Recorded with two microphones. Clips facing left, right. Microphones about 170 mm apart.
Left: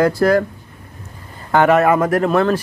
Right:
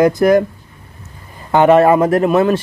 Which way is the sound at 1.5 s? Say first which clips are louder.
Right 4 dB; 20° right (ahead or behind).